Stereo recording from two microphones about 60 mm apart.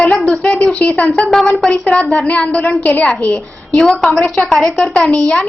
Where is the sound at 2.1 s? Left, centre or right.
Left.